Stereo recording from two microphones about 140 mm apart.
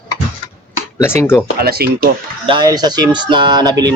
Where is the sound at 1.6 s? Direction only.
90° right.